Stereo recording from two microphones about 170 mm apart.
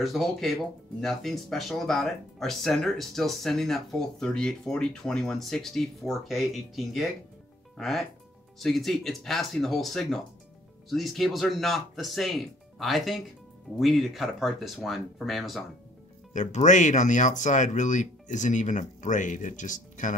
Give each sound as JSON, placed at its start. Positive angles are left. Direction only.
{"t": 0.0, "sound": "speech", "side_deg": 0}
{"t": 16.3, "sound": "speech", "side_deg": 45}